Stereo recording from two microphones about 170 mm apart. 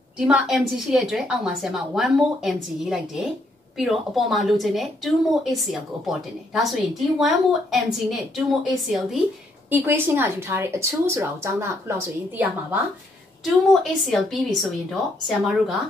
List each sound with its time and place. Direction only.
0.2 s a woman's voice: 5° right (ahead or behind)
9.7 s a woman's voice: 10° right (ahead or behind)
14.1 s a woman's voice: centre (ahead or behind)